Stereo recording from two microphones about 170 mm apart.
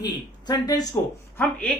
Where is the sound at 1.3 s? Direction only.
10° left (ahead or behind).